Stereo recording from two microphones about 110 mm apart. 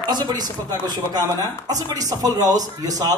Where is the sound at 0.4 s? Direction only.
35° right (ahead or behind).